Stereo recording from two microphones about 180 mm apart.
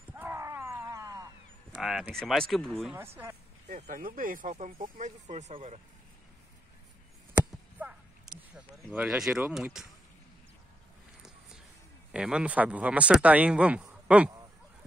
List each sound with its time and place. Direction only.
0.1 s wild animals: 10° right (ahead or behind)
1.8 s speech: 5° right (ahead or behind)
3.0 s speech: 15° right (ahead or behind)
3.6 s speech: 40° right (ahead or behind)
7.3 s a sound: 5° right (ahead or behind)
12.1 s speech: 5° right (ahead or behind)